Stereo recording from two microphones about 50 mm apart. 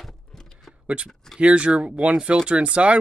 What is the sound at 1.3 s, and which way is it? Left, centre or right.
Speech, right.